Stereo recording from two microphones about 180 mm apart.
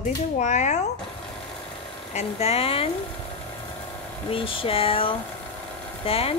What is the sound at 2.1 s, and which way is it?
Speech, 35° left (ahead or behind).